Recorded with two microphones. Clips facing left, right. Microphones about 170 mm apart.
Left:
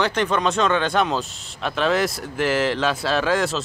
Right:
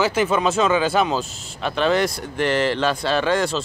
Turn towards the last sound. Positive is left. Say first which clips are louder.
# right 1 dB
turn(degrees=0)  # may be behind; listen again after turning